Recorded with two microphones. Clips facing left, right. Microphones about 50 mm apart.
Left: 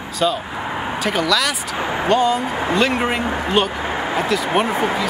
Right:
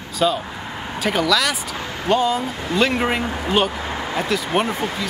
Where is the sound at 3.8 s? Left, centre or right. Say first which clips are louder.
Left 4 dB; left.